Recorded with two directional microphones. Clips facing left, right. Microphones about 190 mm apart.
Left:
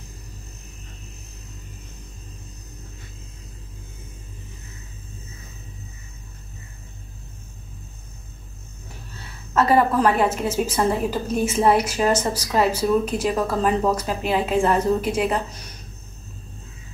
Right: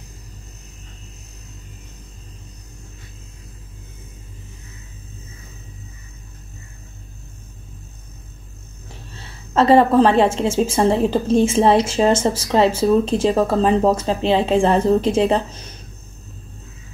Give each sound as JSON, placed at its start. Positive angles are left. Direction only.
{"t": 9.5, "sound": "a woman's voice", "side_deg": -25}